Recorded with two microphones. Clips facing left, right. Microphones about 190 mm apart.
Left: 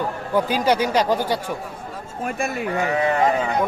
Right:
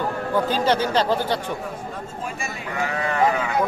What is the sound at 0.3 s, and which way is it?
Speech, 10° left (ahead or behind).